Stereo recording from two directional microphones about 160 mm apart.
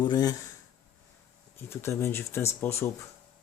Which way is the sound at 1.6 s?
15° left (ahead or behind).